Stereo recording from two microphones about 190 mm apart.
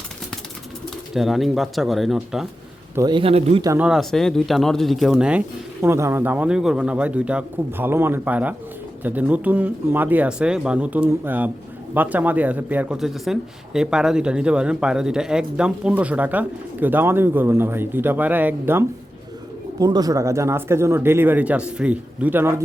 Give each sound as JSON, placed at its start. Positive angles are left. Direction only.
{"t": 1.1, "sound": "speech", "side_deg": 0}
{"t": 2.9, "sound": "a man's voice", "side_deg": -20}
{"t": 3.6, "sound": "speech", "side_deg": -15}
{"t": 3.8, "sound": "speech", "side_deg": 0}